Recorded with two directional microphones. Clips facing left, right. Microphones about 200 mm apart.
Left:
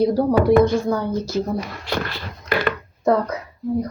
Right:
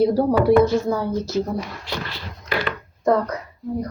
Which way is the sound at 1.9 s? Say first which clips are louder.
Left 5 dB; 55° left (ahead or behind).